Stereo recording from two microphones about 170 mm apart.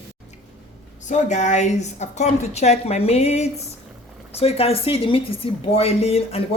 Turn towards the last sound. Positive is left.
turn(degrees=35)  # may be behind; listen again after turning